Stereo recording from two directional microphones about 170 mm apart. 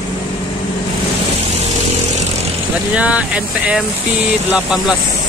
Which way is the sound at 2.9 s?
5° right (ahead or behind).